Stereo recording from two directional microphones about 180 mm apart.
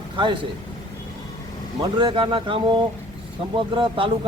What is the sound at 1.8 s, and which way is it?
Speech, 25° right (ahead or behind).